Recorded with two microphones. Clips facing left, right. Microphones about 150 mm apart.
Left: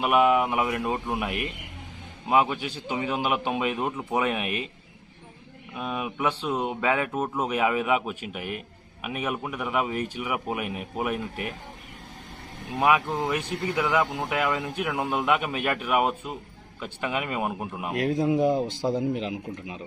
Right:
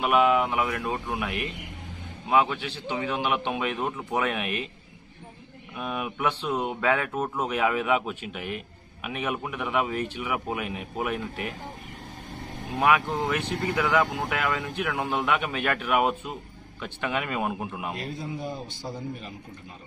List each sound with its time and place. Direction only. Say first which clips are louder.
0.0 s speech: left 1 dB; 5° left (ahead or behind)
2.4 s speech: left 1 dB; 10° left (ahead or behind)
5.7 s a man's voice: left 1 dB; centre (ahead or behind)
12.8 s a man's voice: even; 5° left (ahead or behind)
17.9 s a man's voice: left 11 dB; 80° left